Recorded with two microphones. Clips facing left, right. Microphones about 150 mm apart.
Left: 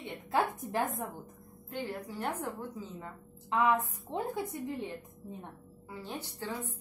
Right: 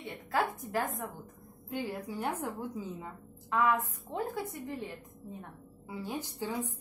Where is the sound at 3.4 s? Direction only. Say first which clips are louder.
Even; 20° left (ahead or behind).